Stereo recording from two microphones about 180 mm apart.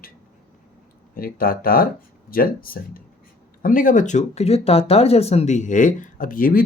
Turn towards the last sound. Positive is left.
turn(degrees=50)  # may be behind; listen again after turning